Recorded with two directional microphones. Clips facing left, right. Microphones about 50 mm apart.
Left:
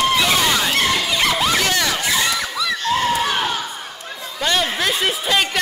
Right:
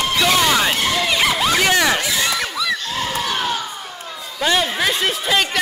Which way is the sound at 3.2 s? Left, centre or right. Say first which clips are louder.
Left 1 dB; left.